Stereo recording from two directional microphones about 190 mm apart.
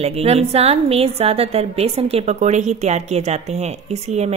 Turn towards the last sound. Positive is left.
turn(degrees=-35)  # may be behind; listen again after turning